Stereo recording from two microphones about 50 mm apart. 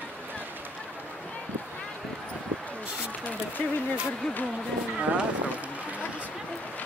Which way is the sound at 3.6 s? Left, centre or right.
Left.